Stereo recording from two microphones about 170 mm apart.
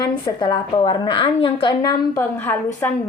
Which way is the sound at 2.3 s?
10° left (ahead or behind).